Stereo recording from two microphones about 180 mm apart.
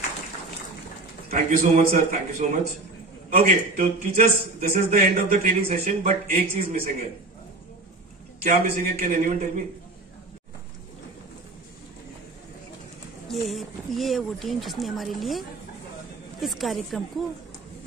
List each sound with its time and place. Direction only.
1.3 s a man's voice: 50° right (ahead or behind)
5.6 s a man's voice: 40° right (ahead or behind)
9.0 s a man's voice: 50° right (ahead or behind)
13.3 s speech: centre (ahead or behind)